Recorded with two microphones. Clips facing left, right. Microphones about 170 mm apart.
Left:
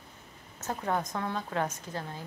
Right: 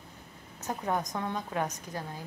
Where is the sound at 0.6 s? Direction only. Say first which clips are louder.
Even; 15° right (ahead or behind).